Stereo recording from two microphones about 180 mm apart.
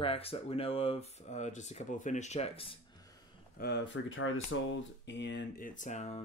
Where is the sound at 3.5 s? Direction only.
65° left (ahead or behind).